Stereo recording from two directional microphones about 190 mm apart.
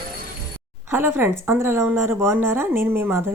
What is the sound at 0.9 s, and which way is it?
A woman's voice, 10° right (ahead or behind).